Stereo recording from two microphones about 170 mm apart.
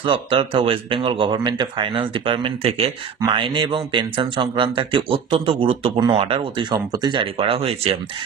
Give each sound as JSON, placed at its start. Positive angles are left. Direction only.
{"t": 0.0, "sound": "speech", "side_deg": -30}